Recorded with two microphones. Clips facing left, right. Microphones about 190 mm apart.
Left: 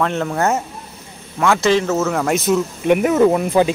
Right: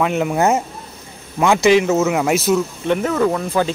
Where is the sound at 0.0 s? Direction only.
10° right (ahead or behind).